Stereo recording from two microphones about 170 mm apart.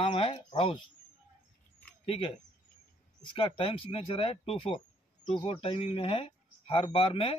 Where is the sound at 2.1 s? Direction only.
35° left (ahead or behind).